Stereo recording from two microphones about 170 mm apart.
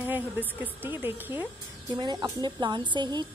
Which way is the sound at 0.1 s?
10° right (ahead or behind).